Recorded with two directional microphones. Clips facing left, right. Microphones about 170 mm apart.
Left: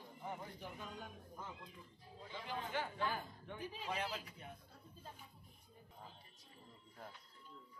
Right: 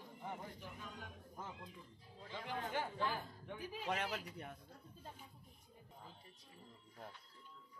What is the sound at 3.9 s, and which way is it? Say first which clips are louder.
Speech: right 3 dB; 70° right (ahead or behind).